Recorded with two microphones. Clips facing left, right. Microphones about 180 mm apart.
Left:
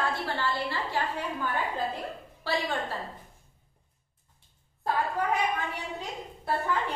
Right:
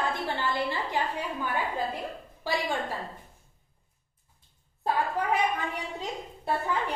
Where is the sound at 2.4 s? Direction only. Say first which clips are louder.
Even; 15° right (ahead or behind).